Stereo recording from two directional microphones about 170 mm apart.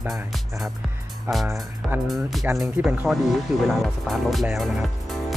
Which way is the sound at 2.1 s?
Centre (ahead or behind).